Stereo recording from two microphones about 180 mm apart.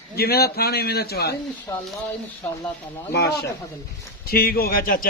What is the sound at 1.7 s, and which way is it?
Speech, 20° left (ahead or behind).